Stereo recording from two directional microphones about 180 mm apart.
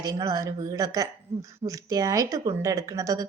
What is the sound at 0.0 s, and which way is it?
A woman's voice, 20° right (ahead or behind).